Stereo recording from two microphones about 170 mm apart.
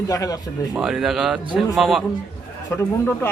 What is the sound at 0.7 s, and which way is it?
Speech, 5° right (ahead or behind).